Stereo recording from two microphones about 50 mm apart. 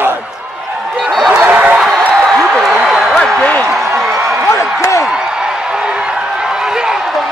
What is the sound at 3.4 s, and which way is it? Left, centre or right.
Basketball bounce, left.